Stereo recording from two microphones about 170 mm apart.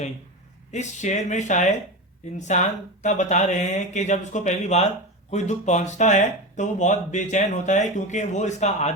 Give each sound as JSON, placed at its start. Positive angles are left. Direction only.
{"t": 0.7, "sound": "speech", "side_deg": 45}